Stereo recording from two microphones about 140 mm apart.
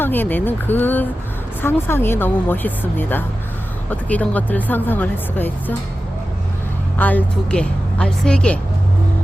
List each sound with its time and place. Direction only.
0.0 s speech: 15° left (ahead or behind)
7.0 s speech: 10° left (ahead or behind)